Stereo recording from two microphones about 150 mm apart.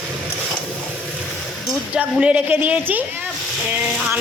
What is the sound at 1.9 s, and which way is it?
Speech, 10° right (ahead or behind).